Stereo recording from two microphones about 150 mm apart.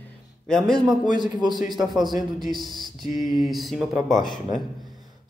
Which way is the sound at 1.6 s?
Centre (ahead or behind).